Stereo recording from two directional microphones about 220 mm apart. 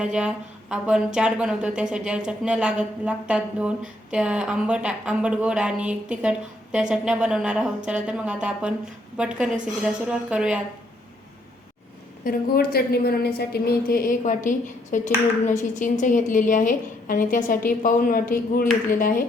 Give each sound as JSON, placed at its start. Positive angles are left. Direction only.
{"t": 0.0, "sound": "speech", "side_deg": -5}
{"t": 12.2, "sound": "a woman's voice", "side_deg": 40}